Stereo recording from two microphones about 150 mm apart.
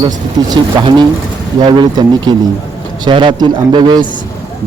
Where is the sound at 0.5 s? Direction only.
25° right (ahead or behind).